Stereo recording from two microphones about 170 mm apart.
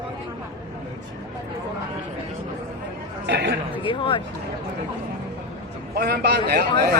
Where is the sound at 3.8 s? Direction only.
30° left (ahead or behind).